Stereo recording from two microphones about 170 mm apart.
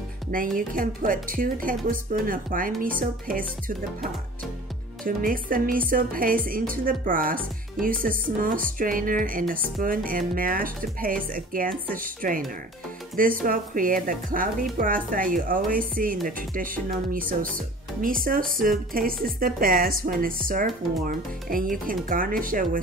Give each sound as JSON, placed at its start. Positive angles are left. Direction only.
{"t": 0.3, "sound": "speech", "side_deg": -55}